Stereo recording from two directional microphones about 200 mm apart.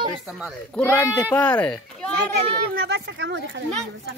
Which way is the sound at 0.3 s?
Centre (ahead or behind).